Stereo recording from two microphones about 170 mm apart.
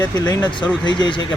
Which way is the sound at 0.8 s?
25° left (ahead or behind).